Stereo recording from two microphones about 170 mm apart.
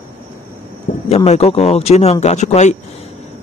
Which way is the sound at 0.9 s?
45° left (ahead or behind).